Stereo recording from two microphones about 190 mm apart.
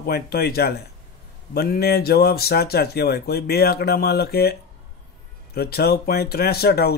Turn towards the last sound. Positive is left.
turn(degrees=55)  # may be behind; listen again after turning